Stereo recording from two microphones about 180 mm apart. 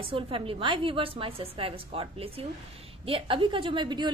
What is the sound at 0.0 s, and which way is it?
A woman's voice, 30° right (ahead or behind).